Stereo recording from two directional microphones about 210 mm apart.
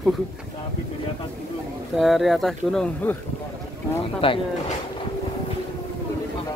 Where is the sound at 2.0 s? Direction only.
Centre (ahead or behind).